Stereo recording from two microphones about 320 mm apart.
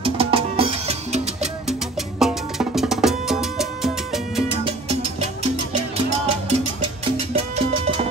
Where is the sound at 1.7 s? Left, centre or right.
Centre.